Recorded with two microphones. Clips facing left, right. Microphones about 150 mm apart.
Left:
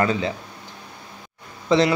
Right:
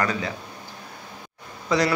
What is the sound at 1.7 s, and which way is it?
Speech, 25° left (ahead or behind).